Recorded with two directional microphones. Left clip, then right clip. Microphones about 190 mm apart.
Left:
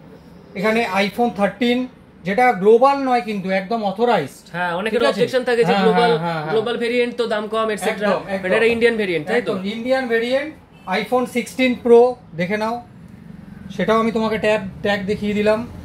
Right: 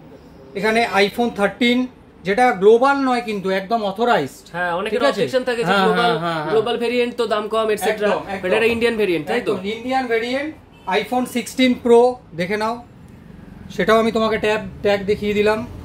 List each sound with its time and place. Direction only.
0.6 s a man's voice: 25° right (ahead or behind)
4.5 s speech: 5° right (ahead or behind)
5.7 s a man's voice: 25° right (ahead or behind)
10.9 s a man's voice: 25° right (ahead or behind)
13.7 s a man's voice: 30° right (ahead or behind)